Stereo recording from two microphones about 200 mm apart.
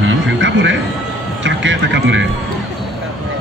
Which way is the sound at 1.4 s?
70° right (ahead or behind).